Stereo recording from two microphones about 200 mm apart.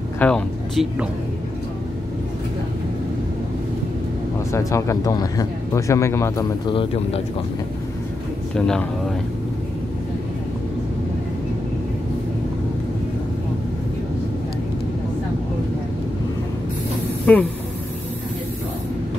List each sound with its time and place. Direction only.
0.2 s speech: 5° left (ahead or behind)
4.5 s speech: 15° left (ahead or behind)
8.5 s speech: 5° left (ahead or behind)
17.3 s speech: 5° left (ahead or behind)